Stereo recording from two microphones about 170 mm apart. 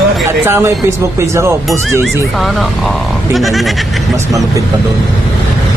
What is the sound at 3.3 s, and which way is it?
Speech, centre (ahead or behind).